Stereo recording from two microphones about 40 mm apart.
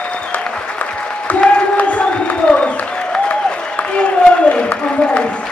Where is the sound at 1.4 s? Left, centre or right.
Left.